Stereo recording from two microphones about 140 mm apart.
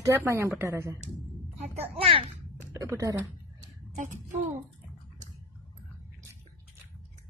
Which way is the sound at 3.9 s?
65° right (ahead or behind).